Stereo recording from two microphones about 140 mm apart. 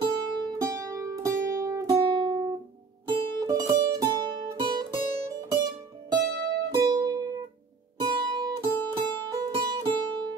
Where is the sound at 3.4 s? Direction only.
25° right (ahead or behind).